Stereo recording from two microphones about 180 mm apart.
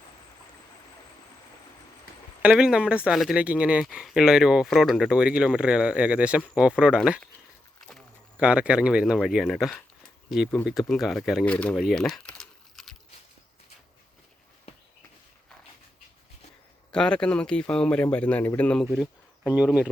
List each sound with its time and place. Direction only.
2.4 s speech: 5° right (ahead or behind)
8.4 s speech: 5° right (ahead or behind)
16.9 s speech: 5° left (ahead or behind)